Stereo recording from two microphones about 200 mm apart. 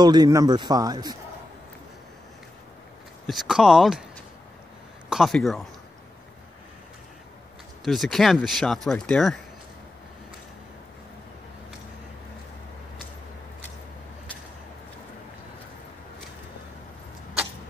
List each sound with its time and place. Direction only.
0.0 s speech: 20° right (ahead or behind)
3.3 s speech: centre (ahead or behind)
5.1 s speech: centre (ahead or behind)
7.8 s speech: centre (ahead or behind)